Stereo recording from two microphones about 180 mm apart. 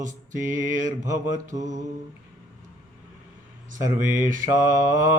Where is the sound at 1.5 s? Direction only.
20° right (ahead or behind).